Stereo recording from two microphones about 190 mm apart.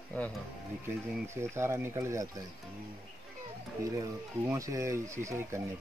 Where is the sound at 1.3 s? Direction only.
15° right (ahead or behind).